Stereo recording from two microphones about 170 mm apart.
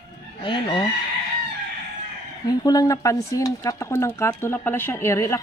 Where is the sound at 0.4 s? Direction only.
30° left (ahead or behind).